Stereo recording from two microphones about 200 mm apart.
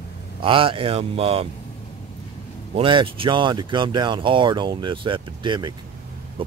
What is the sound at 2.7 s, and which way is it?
Speech, 25° right (ahead or behind).